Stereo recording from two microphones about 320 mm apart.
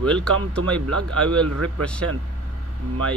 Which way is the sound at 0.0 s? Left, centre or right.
Centre.